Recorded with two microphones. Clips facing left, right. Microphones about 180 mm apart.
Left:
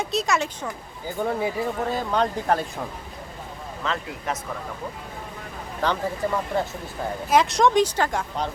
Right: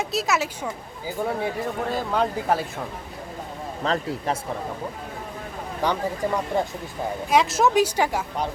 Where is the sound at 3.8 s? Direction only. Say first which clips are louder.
Right 4 dB; 35° right (ahead or behind).